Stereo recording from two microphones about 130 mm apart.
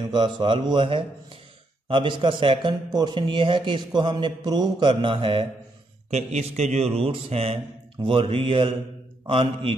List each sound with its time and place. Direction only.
0.1 s a man's voice: 35° right (ahead or behind)
6.0 s a man's voice: 60° right (ahead or behind)